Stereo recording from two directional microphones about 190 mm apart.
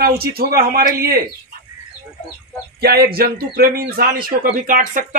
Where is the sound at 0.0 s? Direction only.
55° right (ahead or behind).